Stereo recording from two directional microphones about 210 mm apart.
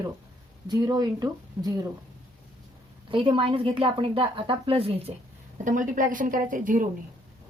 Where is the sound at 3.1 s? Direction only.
25° right (ahead or behind).